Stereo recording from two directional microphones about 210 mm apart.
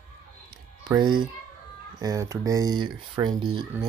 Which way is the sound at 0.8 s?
20° right (ahead or behind).